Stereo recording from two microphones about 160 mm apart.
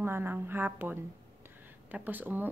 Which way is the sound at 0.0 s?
15° right (ahead or behind).